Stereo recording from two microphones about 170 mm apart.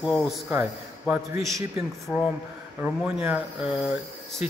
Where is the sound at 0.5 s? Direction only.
10° right (ahead or behind).